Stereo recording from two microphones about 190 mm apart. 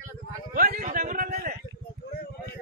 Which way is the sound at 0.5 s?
45° right (ahead or behind).